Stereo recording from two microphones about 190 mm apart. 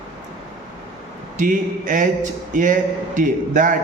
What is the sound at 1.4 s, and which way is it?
Speech, 40° right (ahead or behind).